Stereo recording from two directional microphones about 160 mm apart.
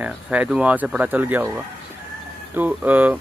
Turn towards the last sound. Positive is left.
turn(degrees=-10)  # may be behind; listen again after turning